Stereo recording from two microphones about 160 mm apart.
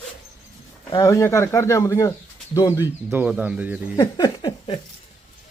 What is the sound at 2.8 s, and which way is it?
Speech, 10° right (ahead or behind).